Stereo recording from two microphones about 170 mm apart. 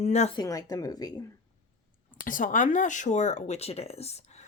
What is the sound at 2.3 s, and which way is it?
Speech, 50° left (ahead or behind).